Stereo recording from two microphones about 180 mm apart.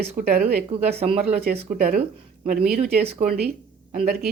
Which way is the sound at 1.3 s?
60° right (ahead or behind).